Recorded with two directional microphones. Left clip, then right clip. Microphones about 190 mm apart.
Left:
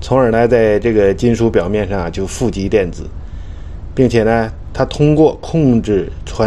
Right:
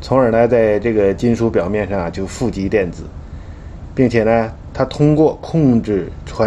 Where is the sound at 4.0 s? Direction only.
25° left (ahead or behind).